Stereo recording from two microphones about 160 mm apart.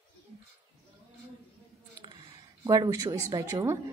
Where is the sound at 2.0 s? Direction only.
25° right (ahead or behind).